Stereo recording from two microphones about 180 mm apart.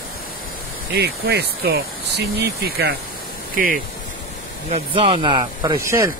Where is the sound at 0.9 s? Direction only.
60° right (ahead or behind).